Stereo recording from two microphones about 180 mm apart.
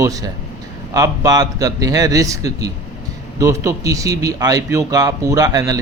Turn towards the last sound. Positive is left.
turn(degrees=-20)  # may be behind; listen again after turning